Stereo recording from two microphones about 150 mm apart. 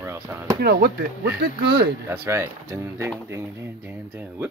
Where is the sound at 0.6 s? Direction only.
90° right.